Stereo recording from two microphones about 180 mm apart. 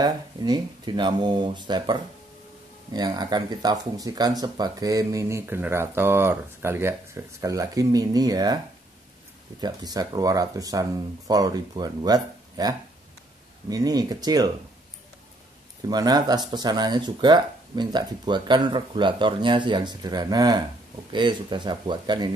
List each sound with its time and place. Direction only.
0.0 s speech: 20° right (ahead or behind)
9.6 s speech: 20° right (ahead or behind)
15.8 s speech: 20° right (ahead or behind)